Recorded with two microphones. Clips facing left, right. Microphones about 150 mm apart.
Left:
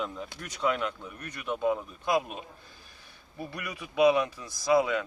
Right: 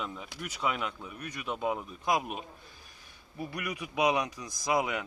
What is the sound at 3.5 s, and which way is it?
Speech, 15° right (ahead or behind).